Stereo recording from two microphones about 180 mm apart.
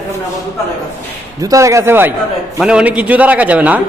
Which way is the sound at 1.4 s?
20° right (ahead or behind).